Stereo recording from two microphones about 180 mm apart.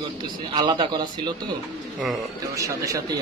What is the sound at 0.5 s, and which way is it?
Speech, 25° right (ahead or behind).